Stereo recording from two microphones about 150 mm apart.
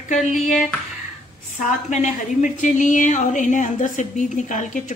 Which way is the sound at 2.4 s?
55° left (ahead or behind).